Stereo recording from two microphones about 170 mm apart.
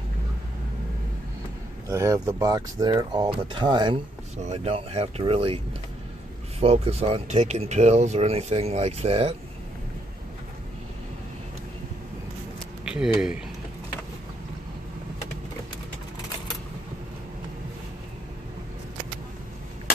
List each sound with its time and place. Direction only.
1.9 s a man's voice: 15° right (ahead or behind); by 5.6 s 35° right (ahead or behind)
6.6 s speech: 35° right (ahead or behind)
12.8 s a sound: 5° right (ahead or behind)